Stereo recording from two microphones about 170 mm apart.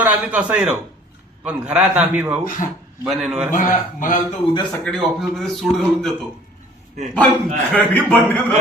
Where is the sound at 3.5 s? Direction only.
50° left (ahead or behind).